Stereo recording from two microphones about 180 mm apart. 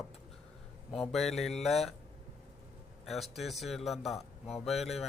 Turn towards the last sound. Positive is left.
turn(degrees=0)  # may be behind; listen again after turning